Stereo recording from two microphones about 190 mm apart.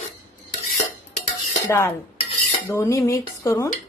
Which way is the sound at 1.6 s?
15° left (ahead or behind).